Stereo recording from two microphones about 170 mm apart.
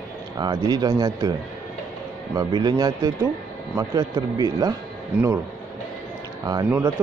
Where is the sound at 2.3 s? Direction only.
25° right (ahead or behind).